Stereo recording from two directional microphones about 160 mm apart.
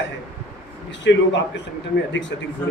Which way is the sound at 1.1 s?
90° left.